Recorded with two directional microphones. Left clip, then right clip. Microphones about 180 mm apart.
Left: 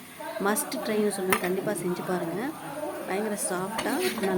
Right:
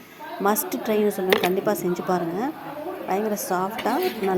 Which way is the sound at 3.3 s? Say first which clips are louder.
Right 5 dB; centre (ahead or behind).